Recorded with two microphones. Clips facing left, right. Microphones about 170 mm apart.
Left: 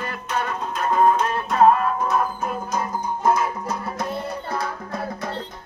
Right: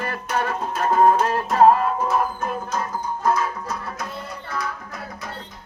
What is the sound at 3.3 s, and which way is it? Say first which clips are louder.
Music: left 1 dB; 25° left (ahead or behind).